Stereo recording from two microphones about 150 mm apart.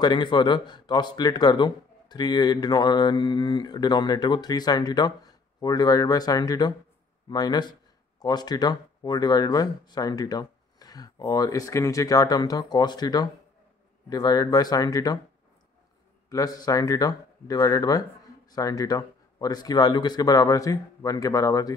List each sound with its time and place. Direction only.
0.0 s speech: 30° left (ahead or behind)
16.3 s speech: 25° left (ahead or behind)